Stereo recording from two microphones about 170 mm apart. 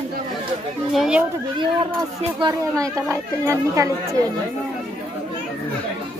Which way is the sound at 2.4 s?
20° right (ahead or behind).